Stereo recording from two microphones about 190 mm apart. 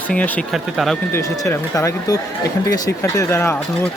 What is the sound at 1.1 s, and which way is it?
Speech, 15° left (ahead or behind).